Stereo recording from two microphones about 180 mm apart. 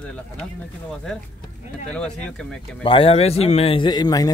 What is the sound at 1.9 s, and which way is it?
Speech, 5° left (ahead or behind).